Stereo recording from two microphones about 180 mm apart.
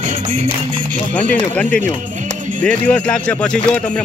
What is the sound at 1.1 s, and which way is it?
Speech, 10° left (ahead or behind).